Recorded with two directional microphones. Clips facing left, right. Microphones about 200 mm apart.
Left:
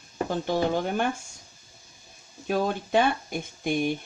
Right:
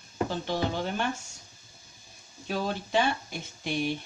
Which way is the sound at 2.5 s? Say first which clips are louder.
Left 4 dB; 50° left (ahead or behind).